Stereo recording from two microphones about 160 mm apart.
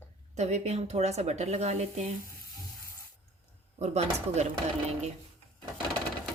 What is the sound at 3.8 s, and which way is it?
Speech, 45° right (ahead or behind).